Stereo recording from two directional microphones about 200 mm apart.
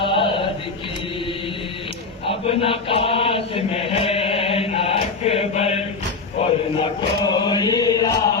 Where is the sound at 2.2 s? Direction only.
25° left (ahead or behind).